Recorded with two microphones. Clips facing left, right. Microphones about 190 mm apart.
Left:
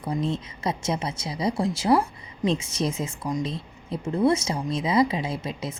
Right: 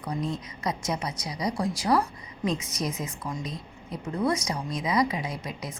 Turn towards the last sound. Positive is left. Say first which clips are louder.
# left 4 dB
turn(degrees=25)  # may be behind; listen again after turning